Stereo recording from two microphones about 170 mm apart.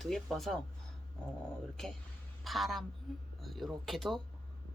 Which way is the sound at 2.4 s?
Centre (ahead or behind).